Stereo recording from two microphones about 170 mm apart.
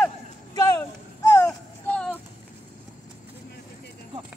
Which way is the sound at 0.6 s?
20° left (ahead or behind).